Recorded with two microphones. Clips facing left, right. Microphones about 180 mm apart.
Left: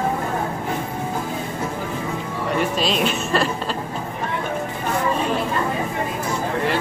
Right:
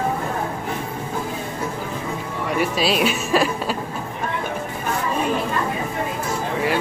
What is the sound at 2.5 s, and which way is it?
Speech, 10° right (ahead or behind).